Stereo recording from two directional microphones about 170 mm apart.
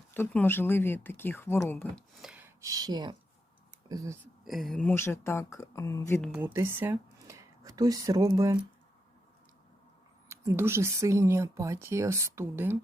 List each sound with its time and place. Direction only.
0.1 s speech: 10° left (ahead or behind)
2.2 s speech: 10° right (ahead or behind)
4.4 s speech: centre (ahead or behind); by 6.1 s 15° left (ahead or behind)
6.2 s speech: 10° right (ahead or behind)
10.2 s speech: 15° right (ahead or behind)